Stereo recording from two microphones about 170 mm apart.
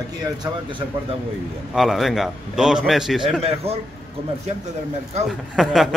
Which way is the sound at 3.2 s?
35° right (ahead or behind).